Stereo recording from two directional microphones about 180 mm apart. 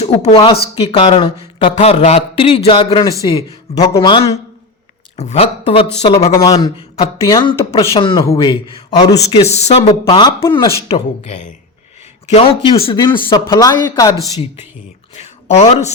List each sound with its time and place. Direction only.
0.0 s speech: 40° left (ahead or behind); by 4.3 s 20° left (ahead or behind)
5.1 s speech: 40° left (ahead or behind)
6.3 s speech: 20° left (ahead or behind)
6.7 s speech: 30° left (ahead or behind)
9.3 s speech: 35° left (ahead or behind)
11.2 s speech: 40° left (ahead or behind); by 14.4 s 20° left (ahead or behind)
15.1 s speech: 40° left (ahead or behind)